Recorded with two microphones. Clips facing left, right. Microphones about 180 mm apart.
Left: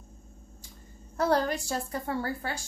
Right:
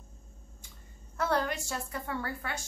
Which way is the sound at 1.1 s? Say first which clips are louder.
Left 4 dB; 35° left (ahead or behind).